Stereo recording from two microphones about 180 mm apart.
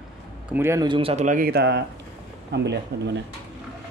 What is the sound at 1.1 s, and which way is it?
Speech, 45° right (ahead or behind).